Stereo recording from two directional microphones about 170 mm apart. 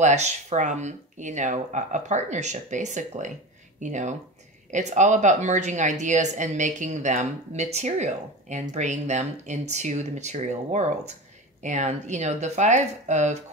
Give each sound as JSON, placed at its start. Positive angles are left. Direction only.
{"t": 0.0, "sound": "speech", "side_deg": -40}